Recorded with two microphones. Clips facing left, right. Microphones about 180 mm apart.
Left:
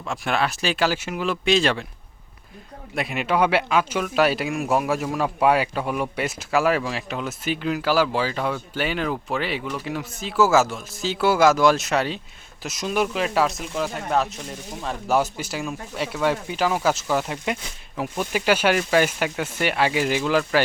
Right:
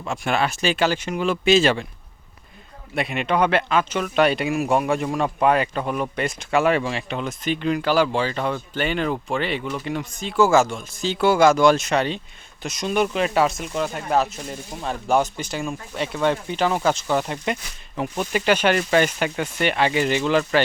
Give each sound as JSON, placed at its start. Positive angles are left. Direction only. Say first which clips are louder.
{"t": 0.0, "sound": "speech", "louder": "right 1 dB", "side_deg": 0}
{"t": 2.9, "sound": "speech", "louder": "right 1 dB", "side_deg": 0}